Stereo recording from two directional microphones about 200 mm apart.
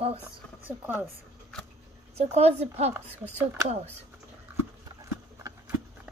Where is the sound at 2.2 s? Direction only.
30° right (ahead or behind).